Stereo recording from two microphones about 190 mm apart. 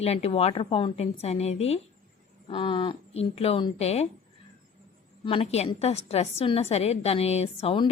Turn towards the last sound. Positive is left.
turn(degrees=30)  # may be behind; listen again after turning